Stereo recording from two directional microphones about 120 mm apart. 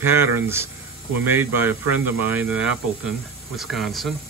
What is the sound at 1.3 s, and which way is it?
Speech, 20° right (ahead or behind).